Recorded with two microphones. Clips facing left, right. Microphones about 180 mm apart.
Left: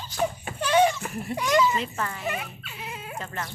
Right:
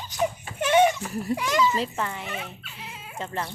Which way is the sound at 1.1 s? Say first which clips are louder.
Right 3 dB; 35° right (ahead or behind).